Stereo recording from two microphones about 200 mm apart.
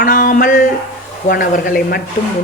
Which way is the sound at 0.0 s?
45° left (ahead or behind).